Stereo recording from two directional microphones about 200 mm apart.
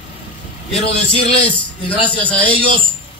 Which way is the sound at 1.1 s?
30° left (ahead or behind).